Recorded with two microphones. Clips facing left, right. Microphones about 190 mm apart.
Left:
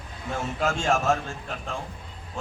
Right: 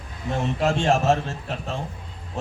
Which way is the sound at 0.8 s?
35° right (ahead or behind).